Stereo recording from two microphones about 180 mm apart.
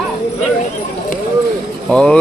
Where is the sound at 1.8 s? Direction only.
5° left (ahead or behind).